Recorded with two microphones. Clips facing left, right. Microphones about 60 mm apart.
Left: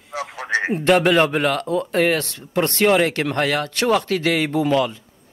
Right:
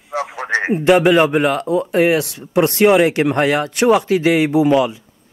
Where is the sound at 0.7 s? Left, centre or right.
Centre.